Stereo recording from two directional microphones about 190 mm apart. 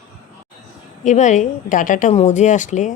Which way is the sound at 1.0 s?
40° left (ahead or behind).